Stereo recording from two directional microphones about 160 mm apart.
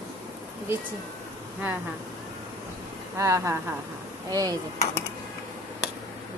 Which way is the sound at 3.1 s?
20° right (ahead or behind).